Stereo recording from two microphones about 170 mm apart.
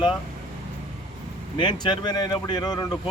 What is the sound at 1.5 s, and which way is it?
Speech, 25° left (ahead or behind).